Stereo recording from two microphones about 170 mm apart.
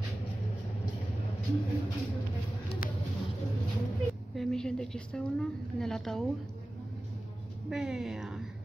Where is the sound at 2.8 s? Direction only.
55° left (ahead or behind).